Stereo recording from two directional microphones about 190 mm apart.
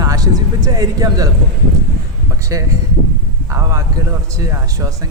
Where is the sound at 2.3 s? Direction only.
15° right (ahead or behind).